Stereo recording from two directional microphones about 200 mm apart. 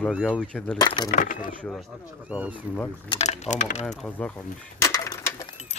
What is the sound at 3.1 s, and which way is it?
Speech, 35° left (ahead or behind).